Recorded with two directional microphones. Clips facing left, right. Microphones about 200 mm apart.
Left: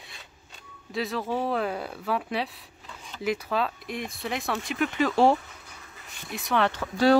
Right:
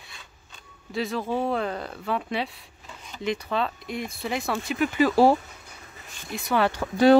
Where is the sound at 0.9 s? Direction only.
Centre (ahead or behind).